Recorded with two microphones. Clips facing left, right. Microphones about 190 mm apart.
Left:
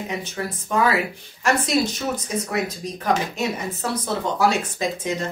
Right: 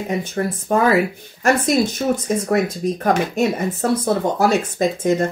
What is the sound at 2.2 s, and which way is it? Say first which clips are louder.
Speech: right 7 dB; 50° right (ahead or behind).